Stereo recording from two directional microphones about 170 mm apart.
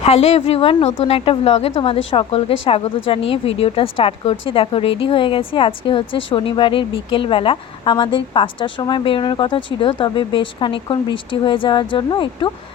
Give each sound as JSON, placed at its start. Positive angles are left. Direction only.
{"t": 0.0, "sound": "a woman's voice", "side_deg": 40}